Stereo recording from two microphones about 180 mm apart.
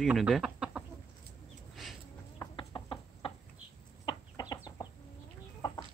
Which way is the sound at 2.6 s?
25° left (ahead or behind).